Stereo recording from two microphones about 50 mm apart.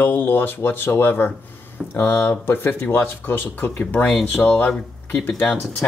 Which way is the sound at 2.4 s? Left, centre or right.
Left.